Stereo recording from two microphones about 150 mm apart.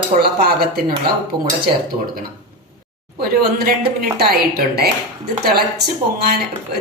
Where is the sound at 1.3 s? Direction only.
30° right (ahead or behind).